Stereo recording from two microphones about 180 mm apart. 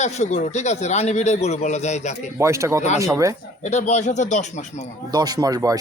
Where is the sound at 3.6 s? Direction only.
40° left (ahead or behind).